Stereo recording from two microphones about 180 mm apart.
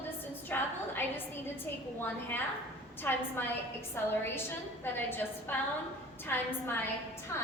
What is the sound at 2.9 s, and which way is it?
A woman's voice, 10° left (ahead or behind).